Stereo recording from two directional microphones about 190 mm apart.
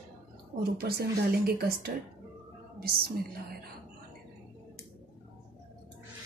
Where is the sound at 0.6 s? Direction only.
55° right (ahead or behind).